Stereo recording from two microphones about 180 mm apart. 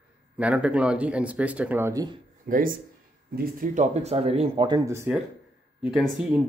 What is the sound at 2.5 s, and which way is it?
Speech, 50° right (ahead or behind).